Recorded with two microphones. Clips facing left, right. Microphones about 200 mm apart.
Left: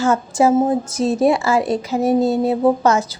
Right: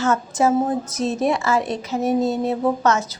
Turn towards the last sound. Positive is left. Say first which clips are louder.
# left 4 dB
turn(degrees=30)  # may be behind; listen again after turning